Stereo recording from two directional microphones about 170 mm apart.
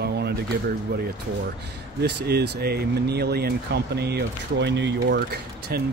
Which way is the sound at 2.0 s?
75° right (ahead or behind).